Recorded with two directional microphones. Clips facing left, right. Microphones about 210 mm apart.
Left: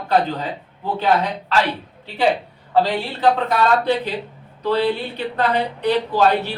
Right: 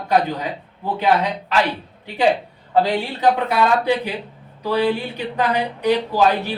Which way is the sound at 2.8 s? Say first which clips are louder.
Even; 10° right (ahead or behind).